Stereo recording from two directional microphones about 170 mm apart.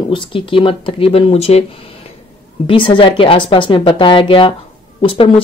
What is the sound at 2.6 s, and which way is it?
Speech, 30° left (ahead or behind).